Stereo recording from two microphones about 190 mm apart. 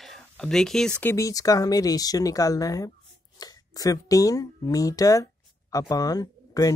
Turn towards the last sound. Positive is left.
turn(degrees=20)  # may be behind; listen again after turning